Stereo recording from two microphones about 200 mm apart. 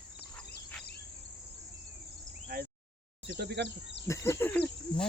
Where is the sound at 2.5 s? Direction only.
50° right (ahead or behind).